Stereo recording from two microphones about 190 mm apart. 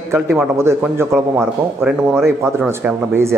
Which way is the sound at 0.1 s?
10° right (ahead or behind).